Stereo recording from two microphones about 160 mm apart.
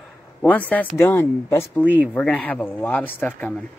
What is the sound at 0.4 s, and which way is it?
Speech, 10° left (ahead or behind).